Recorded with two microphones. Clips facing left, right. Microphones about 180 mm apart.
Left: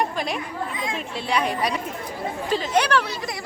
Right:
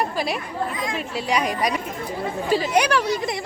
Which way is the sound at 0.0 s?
5° right (ahead or behind).